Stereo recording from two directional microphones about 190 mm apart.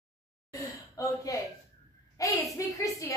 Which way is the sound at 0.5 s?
20° left (ahead or behind).